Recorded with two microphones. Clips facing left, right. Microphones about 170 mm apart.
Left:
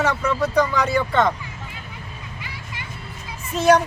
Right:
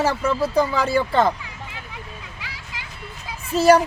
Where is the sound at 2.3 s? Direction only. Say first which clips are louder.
Left 2 dB; 90° right.